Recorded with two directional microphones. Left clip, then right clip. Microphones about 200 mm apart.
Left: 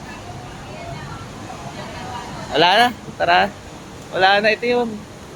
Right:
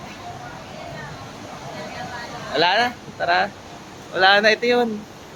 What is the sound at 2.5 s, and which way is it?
Speech, 25° left (ahead or behind).